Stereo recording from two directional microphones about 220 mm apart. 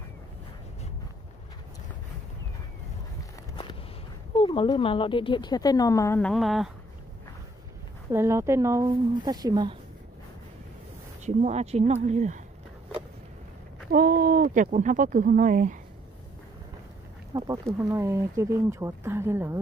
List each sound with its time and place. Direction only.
4.4 s speech: 20° left (ahead or behind); by 6.7 s centre (ahead or behind)
8.1 s speech: 10° right (ahead or behind)
11.2 s speech: 30° right (ahead or behind)
13.9 s speech: 40° right (ahead or behind)
17.3 s speech: 15° right (ahead or behind)